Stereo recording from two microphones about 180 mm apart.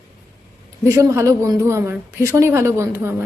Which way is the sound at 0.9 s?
15° right (ahead or behind).